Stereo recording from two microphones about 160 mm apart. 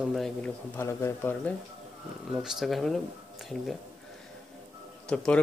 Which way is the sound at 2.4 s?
Centre (ahead or behind).